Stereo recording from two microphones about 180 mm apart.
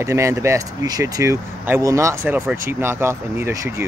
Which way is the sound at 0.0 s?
15° right (ahead or behind).